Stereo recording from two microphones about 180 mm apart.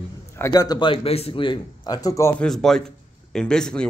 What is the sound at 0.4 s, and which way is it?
A man's voice, 20° left (ahead or behind).